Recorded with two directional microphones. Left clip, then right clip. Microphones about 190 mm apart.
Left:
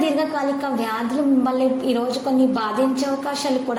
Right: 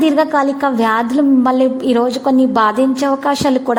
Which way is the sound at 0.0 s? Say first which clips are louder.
Right 8 dB; 50° right (ahead or behind).